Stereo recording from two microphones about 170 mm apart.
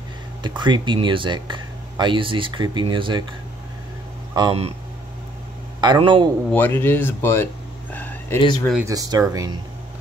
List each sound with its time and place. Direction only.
0.4 s speech: 25° right (ahead or behind)
4.3 s speech: 25° right (ahead or behind)
5.8 s speech: 25° right (ahead or behind)
6.5 s speech: 10° left (ahead or behind)
7.9 s a sound: 10° left (ahead or behind)
8.4 s speech: 25° left (ahead or behind)
8.8 s speech: 20° right (ahead or behind)